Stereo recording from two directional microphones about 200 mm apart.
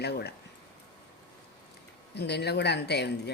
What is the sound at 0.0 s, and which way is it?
Speech, 55° left (ahead or behind).